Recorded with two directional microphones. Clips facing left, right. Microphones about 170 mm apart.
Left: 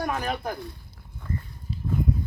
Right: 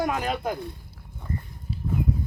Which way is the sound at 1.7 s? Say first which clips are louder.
Right 1 dB; 5° right (ahead or behind).